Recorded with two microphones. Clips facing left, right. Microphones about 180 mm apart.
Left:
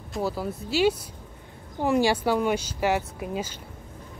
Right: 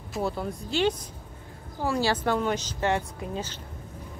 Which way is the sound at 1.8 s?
15° left (ahead or behind).